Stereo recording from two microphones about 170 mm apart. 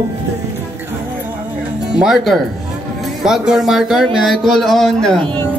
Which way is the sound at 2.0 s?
5° right (ahead or behind).